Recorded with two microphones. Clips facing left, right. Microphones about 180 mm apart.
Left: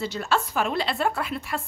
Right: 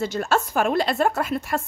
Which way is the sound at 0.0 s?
45° right (ahead or behind).